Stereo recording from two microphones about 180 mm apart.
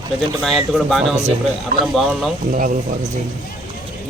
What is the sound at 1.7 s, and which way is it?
Speech, 45° right (ahead or behind).